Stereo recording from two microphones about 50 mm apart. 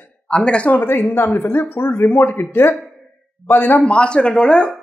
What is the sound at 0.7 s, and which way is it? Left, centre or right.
A woman's voice, left.